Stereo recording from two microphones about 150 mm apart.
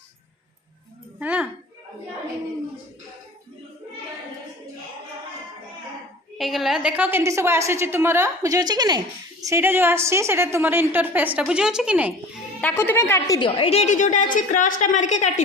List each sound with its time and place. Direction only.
1.2 s speech: 10° right (ahead or behind)
6.3 s a woman's voice: centre (ahead or behind)
12.6 s a woman's voice: 15° left (ahead or behind)
13.4 s a woman's voice: 40° left (ahead or behind)